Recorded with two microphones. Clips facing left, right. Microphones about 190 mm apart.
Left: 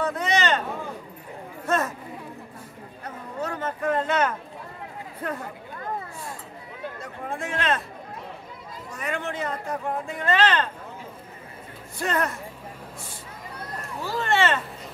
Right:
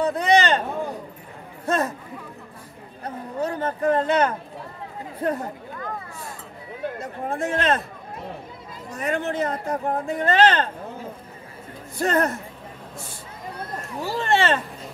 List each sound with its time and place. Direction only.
0.0 s a sound: 35° right (ahead or behind)
3.3 s speech: 35° right (ahead or behind)
7.0 s speech: 40° right (ahead or behind)
8.9 s speech: 40° right (ahead or behind)
12.0 s speech: 40° right (ahead or behind)
14.0 s speech: 30° right (ahead or behind)